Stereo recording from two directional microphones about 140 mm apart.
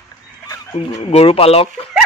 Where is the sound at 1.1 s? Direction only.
45° left (ahead or behind).